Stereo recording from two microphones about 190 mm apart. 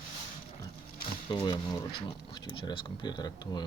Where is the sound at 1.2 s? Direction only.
25° left (ahead or behind).